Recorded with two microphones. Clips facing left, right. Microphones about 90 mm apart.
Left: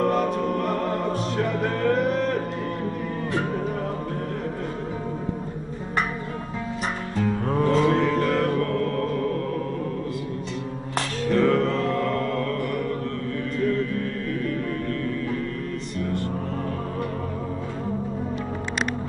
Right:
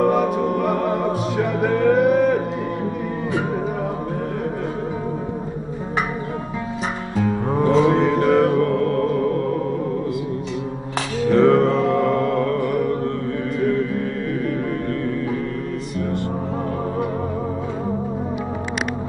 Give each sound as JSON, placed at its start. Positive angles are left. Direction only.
{"t": 0.0, "sound": "music", "side_deg": -10}
{"t": 7.2, "sound": "music", "side_deg": -15}
{"t": 11.2, "sound": "mantra", "side_deg": -15}